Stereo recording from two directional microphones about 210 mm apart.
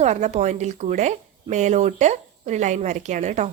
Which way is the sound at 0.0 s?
30° right (ahead or behind).